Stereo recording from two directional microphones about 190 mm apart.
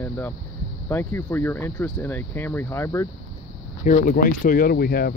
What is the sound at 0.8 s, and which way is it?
Speech, 10° left (ahead or behind).